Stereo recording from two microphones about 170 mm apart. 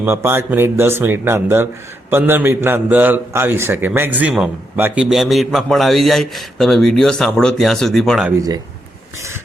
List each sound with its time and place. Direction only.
0.0 s a man's voice: 10° right (ahead or behind)
8.4 s a man's voice: 20° right (ahead or behind)